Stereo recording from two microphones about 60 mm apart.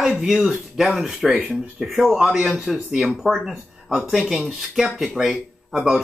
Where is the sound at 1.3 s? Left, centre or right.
Centre.